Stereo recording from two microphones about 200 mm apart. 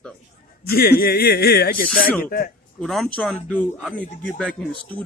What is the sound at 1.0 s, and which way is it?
Speech, 50° left (ahead or behind).